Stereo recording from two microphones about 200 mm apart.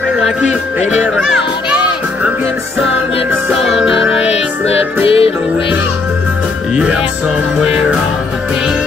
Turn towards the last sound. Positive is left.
turn(degrees=-5)  # may be behind; listen again after turning